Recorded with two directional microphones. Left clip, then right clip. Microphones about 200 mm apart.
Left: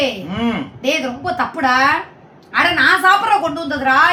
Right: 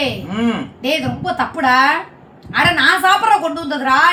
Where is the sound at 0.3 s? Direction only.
20° right (ahead or behind).